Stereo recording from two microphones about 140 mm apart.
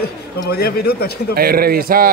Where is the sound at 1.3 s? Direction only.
90° right.